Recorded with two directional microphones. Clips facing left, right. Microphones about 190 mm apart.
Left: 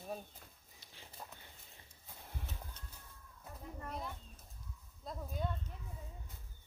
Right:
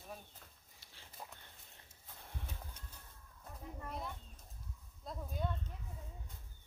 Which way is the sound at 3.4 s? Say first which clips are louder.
Left 1 dB; centre (ahead or behind).